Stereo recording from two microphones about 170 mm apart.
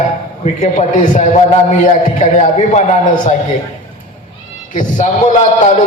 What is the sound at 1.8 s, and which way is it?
Speech, 50° left (ahead or behind).